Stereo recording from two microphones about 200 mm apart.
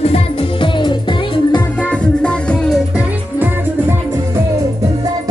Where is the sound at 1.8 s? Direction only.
5° left (ahead or behind).